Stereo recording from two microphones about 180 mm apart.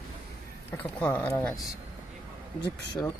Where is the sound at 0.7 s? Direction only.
10° left (ahead or behind).